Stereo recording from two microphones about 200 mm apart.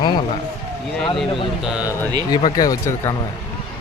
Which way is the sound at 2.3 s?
20° left (ahead or behind).